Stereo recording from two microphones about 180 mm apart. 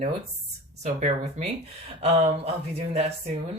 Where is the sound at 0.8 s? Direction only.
40° right (ahead or behind).